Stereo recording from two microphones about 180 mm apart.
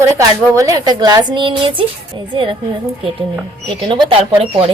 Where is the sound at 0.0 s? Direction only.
20° right (ahead or behind).